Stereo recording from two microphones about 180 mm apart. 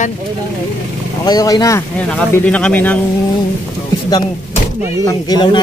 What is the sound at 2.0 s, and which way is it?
Speech, 5° left (ahead or behind).